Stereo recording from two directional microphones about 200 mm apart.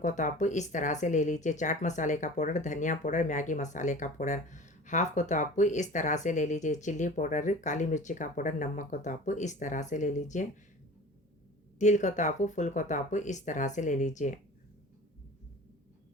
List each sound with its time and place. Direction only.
0.0 s speech: 40° left (ahead or behind)
11.8 s speech: 35° left (ahead or behind)